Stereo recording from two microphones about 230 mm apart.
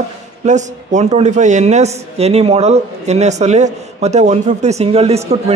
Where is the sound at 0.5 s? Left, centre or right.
Right.